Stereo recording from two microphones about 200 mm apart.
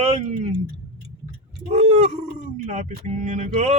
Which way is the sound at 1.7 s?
30° right (ahead or behind).